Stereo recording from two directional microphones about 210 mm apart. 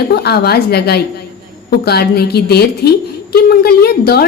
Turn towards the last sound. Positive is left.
turn(degrees=50)  # may be behind; listen again after turning